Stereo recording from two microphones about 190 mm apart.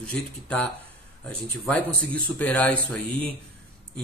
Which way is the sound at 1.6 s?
5° left (ahead or behind).